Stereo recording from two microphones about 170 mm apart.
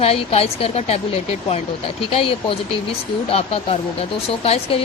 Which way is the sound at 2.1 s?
35° left (ahead or behind).